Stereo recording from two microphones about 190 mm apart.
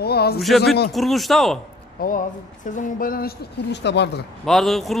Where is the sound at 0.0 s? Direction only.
55° left (ahead or behind).